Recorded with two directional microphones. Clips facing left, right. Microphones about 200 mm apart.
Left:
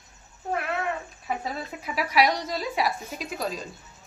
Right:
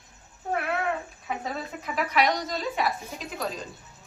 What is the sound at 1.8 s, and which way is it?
Speech, 10° left (ahead or behind).